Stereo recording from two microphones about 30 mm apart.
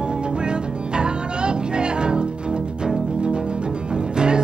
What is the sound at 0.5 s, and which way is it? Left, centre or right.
Music, right.